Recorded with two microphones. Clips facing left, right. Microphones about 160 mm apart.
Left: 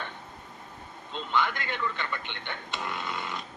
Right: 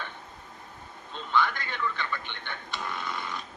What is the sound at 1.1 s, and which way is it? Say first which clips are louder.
A man's voice: right 1 dB; 15° left (ahead or behind).